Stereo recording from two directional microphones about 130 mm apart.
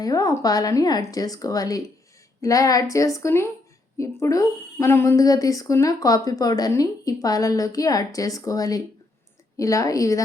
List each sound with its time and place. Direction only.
0.0 s a woman's voice: 30° left (ahead or behind)